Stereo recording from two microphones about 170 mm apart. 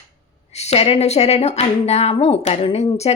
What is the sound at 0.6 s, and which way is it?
Speech, 40° left (ahead or behind).